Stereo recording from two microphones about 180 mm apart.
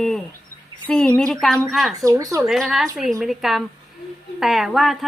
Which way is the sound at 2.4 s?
Centre (ahead or behind).